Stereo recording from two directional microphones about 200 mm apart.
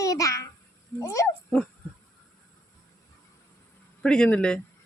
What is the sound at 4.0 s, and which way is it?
Speech, 5° left (ahead or behind).